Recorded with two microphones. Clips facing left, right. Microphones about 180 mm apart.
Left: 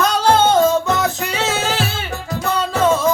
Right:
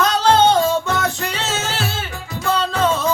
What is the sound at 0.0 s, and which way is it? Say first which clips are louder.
Music: even; 10° left (ahead or behind).